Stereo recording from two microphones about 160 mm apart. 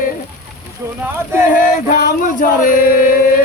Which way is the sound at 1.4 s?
55° left (ahead or behind).